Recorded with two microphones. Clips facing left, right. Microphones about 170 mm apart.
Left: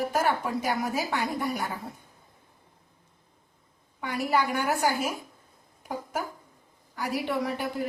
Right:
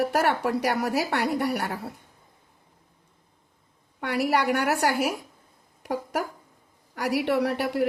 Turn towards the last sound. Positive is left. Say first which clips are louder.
# right 5 dB
turn(degrees=-75)  # may be behind; listen again after turning